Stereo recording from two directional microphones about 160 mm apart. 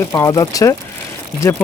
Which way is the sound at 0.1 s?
20° left (ahead or behind).